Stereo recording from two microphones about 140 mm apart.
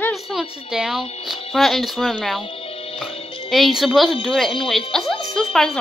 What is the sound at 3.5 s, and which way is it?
Speech, centre (ahead or behind).